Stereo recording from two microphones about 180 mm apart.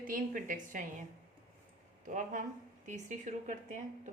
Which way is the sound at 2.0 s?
45° right (ahead or behind).